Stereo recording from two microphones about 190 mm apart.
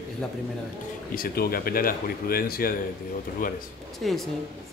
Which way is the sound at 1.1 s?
50° left (ahead or behind).